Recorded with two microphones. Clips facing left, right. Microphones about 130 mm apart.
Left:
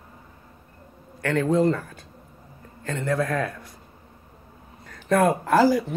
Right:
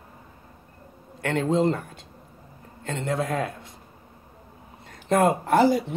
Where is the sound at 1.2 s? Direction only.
25° right (ahead or behind).